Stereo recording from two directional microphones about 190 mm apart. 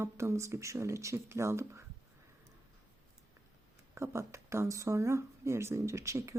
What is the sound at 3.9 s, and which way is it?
Speech, 15° right (ahead or behind).